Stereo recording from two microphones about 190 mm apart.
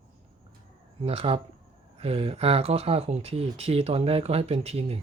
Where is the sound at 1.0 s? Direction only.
30° right (ahead or behind).